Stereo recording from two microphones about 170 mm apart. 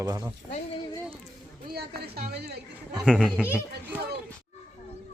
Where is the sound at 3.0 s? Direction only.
Centre (ahead or behind).